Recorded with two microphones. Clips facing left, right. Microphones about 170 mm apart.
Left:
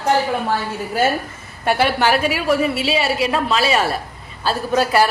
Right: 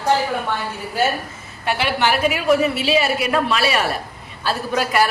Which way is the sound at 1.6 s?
45° left (ahead or behind).